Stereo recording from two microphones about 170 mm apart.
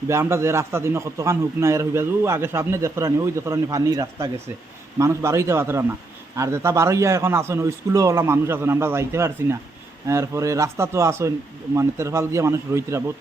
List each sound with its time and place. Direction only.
0.1 s a man's voice: 15° right (ahead or behind)